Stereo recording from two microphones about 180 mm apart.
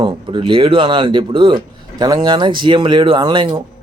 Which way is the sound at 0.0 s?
25° right (ahead or behind).